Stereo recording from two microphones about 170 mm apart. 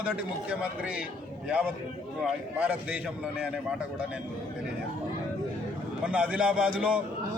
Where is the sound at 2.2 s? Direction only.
10° right (ahead or behind).